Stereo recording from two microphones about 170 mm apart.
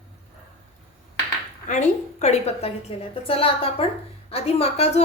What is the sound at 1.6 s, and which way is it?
A woman's voice, 45° left (ahead or behind).